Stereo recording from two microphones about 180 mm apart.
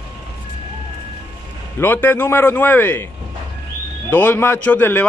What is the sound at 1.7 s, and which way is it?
A man's voice, 10° left (ahead or behind).